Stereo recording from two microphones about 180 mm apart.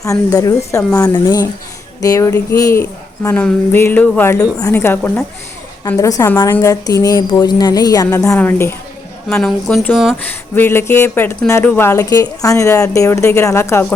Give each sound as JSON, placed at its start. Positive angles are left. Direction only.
{"t": 0.0, "sound": "a woman's voice", "side_deg": 20}
{"t": 10.5, "sound": "speech", "side_deg": 15}